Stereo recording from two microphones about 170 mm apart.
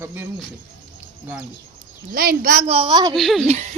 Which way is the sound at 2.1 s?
55° right (ahead or behind).